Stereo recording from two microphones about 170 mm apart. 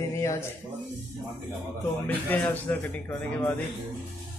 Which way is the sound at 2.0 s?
10° left (ahead or behind).